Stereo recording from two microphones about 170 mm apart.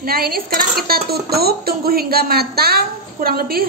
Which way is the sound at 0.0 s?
60° right (ahead or behind).